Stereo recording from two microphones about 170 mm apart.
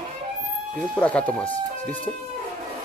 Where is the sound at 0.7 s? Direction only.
5° left (ahead or behind).